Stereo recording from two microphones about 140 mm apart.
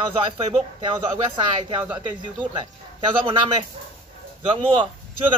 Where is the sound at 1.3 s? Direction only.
35° right (ahead or behind).